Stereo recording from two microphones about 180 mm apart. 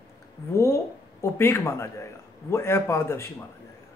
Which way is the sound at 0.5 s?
15° left (ahead or behind).